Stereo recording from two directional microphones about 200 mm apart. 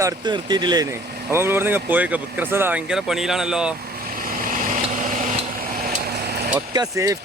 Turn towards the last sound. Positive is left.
turn(degrees=-15)  # may be behind; listen again after turning